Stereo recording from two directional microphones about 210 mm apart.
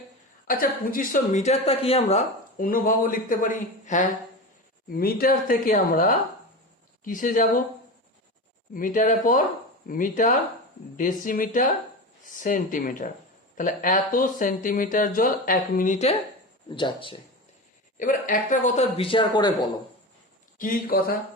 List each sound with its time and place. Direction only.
0.4 s speech: 40° left (ahead or behind)
8.7 s a man's voice: 40° left (ahead or behind); by 17.2 s 25° left (ahead or behind)
17.9 s a man's voice: 40° left (ahead or behind); by 19.5 s 20° left (ahead or behind)
20.6 s speech: 45° left (ahead or behind)